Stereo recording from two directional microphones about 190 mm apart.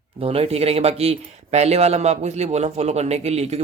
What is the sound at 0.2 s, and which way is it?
Speech, 30° right (ahead or behind).